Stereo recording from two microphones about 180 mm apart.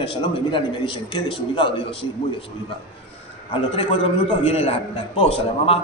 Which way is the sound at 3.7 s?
30° left (ahead or behind).